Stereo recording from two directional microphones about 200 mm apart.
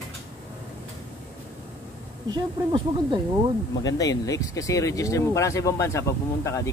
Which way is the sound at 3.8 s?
20° left (ahead or behind).